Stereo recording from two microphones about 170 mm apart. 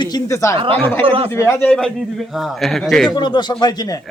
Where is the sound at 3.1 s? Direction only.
25° left (ahead or behind).